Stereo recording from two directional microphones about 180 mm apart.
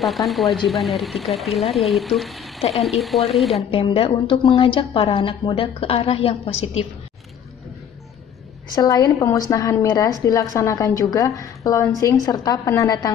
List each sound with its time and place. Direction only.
0.0 s speech: centre (ahead or behind)
3.7 s a woman's voice: 30° left (ahead or behind)
8.7 s a woman's voice: 20° left (ahead or behind)